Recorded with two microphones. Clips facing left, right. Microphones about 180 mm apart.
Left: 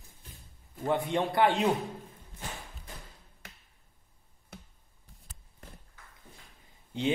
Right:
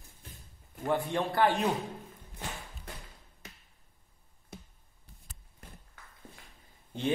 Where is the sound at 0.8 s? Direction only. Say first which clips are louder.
Left 1 dB; 20° left (ahead or behind).